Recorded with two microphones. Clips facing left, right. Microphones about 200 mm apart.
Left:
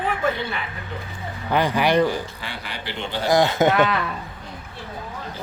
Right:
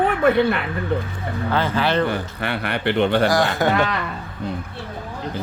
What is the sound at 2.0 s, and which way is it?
Speech, 60° right (ahead or behind).